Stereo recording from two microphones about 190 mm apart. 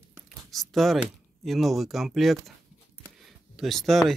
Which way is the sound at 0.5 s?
Centre (ahead or behind).